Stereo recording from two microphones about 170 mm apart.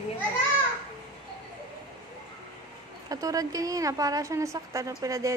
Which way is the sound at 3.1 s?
20° right (ahead or behind).